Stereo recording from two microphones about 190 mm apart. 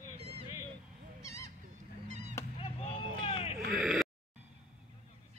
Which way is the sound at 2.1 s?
40° right (ahead or behind).